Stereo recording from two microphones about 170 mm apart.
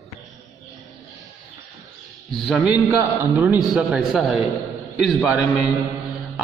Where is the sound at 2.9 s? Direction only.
10° right (ahead or behind).